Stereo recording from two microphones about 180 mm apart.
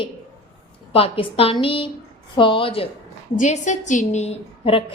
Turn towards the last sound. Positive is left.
turn(degrees=35)  # may be behind; listen again after turning